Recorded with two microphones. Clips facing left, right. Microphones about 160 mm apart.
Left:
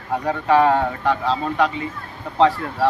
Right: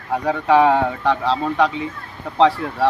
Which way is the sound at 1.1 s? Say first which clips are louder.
Right 1 dB; 10° left (ahead or behind).